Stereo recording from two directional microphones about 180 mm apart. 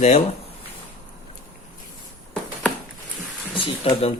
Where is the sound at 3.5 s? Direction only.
30° left (ahead or behind).